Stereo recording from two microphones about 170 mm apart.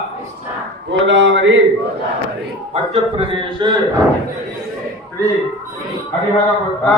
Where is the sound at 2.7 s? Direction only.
35° right (ahead or behind).